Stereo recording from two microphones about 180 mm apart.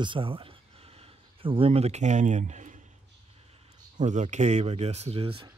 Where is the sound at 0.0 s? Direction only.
30° right (ahead or behind).